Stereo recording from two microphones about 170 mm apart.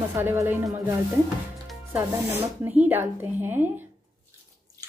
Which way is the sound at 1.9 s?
10° right (ahead or behind).